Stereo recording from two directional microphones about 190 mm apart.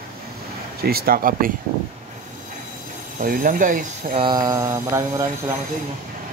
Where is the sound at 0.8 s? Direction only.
55° right (ahead or behind).